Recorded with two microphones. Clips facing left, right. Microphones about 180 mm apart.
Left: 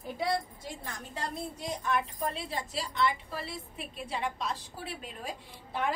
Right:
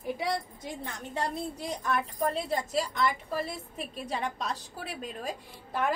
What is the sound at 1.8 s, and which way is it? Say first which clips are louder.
A woman's voice: right 2 dB; 40° right (ahead or behind).